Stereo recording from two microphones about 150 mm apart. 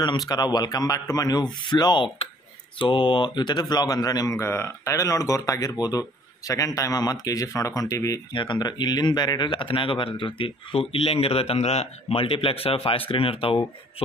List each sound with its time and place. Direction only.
0.0 s speech: 25° left (ahead or behind)